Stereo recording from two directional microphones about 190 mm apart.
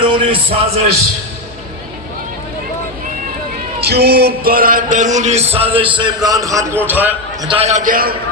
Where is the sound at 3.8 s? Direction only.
60° right (ahead or behind); by 6.2 s 25° right (ahead or behind).